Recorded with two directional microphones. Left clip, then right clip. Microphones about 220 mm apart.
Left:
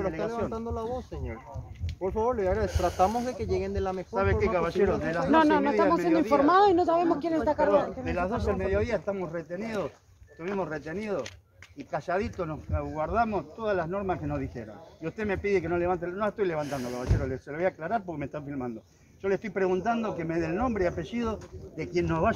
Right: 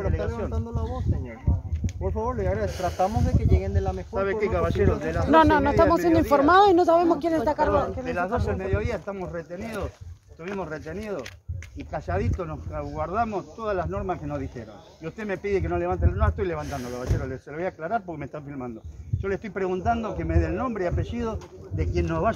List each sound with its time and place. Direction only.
2.0 s speech: 25° left (ahead or behind)
2.7 s speech: 5° right (ahead or behind)
3.3 s speech: 20° left (ahead or behind)
4.1 s speech: 10° right (ahead or behind)
5.3 s speech: 45° right (ahead or behind)
8.0 s speech: 20° right (ahead or behind)